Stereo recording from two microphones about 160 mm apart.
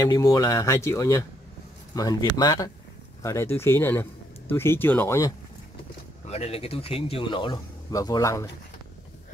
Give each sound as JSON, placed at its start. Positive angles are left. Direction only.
{"t": 0.0, "sound": "speech", "side_deg": 25}
{"t": 6.2, "sound": "speech", "side_deg": 40}